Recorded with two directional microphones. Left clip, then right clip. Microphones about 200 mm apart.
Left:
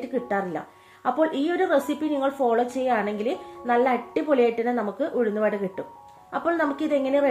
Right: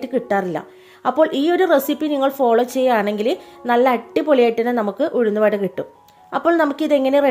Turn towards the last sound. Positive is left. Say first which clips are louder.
# right 7 dB
turn(degrees=-55)  # may be behind; listen again after turning